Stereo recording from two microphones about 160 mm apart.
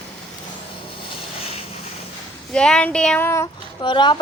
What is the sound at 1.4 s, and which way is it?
Vehicle, 40° left (ahead or behind).